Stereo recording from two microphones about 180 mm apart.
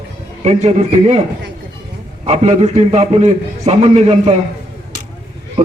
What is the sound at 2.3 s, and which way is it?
Speech, 40° right (ahead or behind).